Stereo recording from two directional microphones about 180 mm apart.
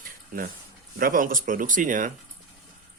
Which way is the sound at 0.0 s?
55° right (ahead or behind).